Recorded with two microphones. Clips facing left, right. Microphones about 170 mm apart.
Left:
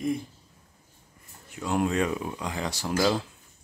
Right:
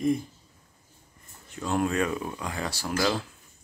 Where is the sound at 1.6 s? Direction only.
15° left (ahead or behind).